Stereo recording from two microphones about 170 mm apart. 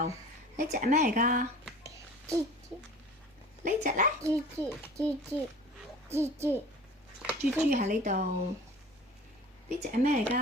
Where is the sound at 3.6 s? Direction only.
50° right (ahead or behind).